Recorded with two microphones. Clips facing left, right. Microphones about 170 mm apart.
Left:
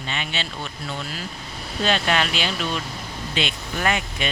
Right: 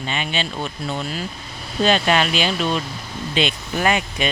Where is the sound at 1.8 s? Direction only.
20° right (ahead or behind).